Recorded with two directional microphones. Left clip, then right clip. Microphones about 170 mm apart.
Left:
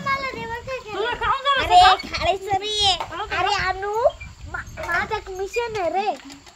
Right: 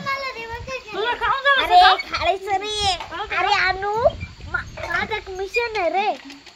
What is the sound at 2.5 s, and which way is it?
Speech, 20° right (ahead or behind).